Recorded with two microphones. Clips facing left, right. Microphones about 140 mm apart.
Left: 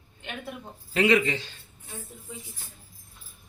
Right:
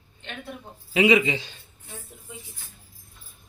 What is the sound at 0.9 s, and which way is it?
Speech, 10° right (ahead or behind).